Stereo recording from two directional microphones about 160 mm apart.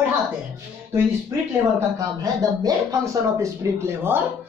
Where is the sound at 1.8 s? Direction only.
20° right (ahead or behind).